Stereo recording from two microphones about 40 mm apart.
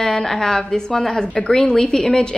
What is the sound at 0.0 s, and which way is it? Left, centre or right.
A woman's voice, centre.